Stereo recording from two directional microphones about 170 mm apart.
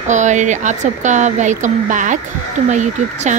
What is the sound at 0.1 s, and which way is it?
Speech, 45° right (ahead or behind).